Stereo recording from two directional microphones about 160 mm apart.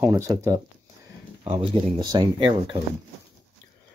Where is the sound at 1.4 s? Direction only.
35° right (ahead or behind).